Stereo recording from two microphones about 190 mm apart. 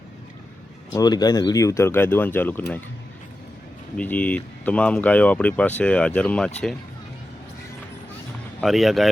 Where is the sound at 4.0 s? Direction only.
5° left (ahead or behind).